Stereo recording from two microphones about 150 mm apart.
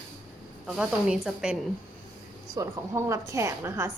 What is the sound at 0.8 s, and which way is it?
Speech, 5° right (ahead or behind).